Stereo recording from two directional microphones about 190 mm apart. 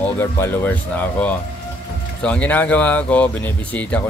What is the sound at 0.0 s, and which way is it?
Speech, 10° left (ahead or behind).